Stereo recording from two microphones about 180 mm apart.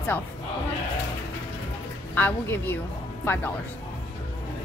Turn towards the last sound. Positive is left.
turn(degrees=10)  # may be behind; listen again after turning